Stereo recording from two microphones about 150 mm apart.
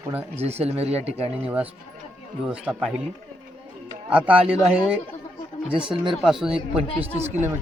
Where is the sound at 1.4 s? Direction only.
10° right (ahead or behind).